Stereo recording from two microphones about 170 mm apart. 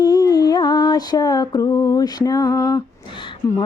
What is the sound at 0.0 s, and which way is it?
Music, 25° left (ahead or behind).